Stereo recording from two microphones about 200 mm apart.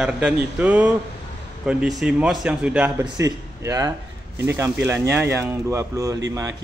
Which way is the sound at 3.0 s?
15° right (ahead or behind).